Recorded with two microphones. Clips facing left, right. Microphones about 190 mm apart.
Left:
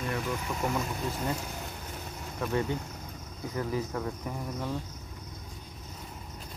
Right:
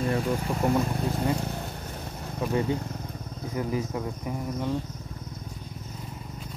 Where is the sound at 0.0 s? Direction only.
35° right (ahead or behind).